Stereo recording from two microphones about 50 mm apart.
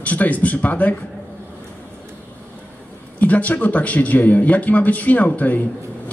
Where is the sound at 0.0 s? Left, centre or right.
Left.